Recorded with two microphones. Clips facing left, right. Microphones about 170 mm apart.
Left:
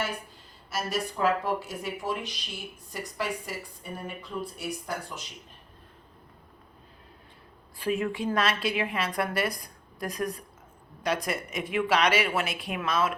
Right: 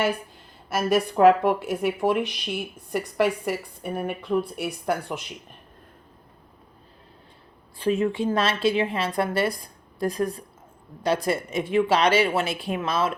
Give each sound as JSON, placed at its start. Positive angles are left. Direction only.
{"t": 0.7, "sound": "speech", "side_deg": -55}
{"t": 7.8, "sound": "a woman's voice", "side_deg": -25}